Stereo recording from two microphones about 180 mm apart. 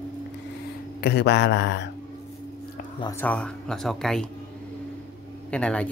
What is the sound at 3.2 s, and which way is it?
Speech, 5° left (ahead or behind).